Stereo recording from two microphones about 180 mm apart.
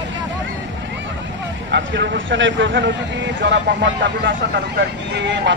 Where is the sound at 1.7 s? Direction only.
80° right.